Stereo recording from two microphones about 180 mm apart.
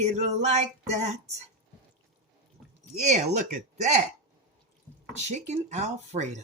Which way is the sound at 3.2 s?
40° right (ahead or behind).